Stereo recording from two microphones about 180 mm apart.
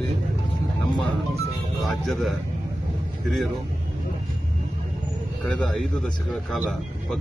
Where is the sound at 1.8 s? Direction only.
Centre (ahead or behind).